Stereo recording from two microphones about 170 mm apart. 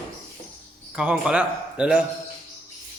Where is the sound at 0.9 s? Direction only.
5° right (ahead or behind).